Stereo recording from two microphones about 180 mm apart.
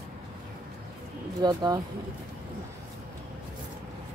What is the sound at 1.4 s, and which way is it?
Speech, 20° right (ahead or behind).